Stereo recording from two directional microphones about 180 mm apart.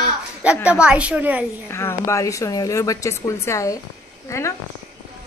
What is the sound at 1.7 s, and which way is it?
Speech, 15° left (ahead or behind).